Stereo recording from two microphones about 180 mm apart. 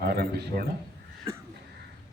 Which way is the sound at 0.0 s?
55° right (ahead or behind).